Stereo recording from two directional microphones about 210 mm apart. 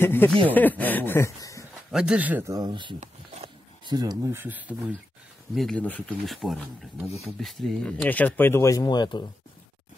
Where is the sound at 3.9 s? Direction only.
15° right (ahead or behind).